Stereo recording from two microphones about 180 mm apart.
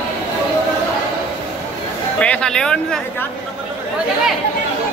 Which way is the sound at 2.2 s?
5° left (ahead or behind).